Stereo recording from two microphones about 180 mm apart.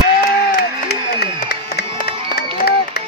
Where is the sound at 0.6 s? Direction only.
60° left (ahead or behind).